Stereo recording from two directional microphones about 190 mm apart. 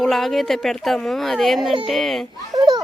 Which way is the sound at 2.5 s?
25° right (ahead or behind).